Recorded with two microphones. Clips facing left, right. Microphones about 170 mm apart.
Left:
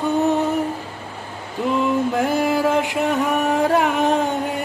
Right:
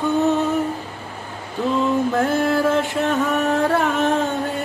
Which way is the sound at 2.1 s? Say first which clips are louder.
Even; 15° left (ahead or behind).